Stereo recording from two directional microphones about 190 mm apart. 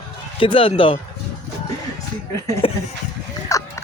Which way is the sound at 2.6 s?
30° left (ahead or behind).